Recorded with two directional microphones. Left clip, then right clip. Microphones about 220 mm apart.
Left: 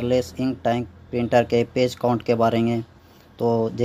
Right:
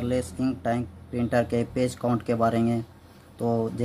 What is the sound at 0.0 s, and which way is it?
Speech, 20° left (ahead or behind).